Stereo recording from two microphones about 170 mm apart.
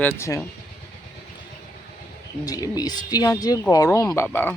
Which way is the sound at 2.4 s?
20° left (ahead or behind).